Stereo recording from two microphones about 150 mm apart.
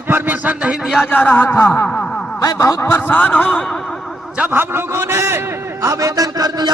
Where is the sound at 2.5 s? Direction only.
20° left (ahead or behind).